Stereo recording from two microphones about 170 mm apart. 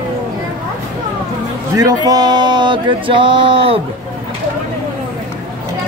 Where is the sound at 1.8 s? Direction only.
20° right (ahead or behind).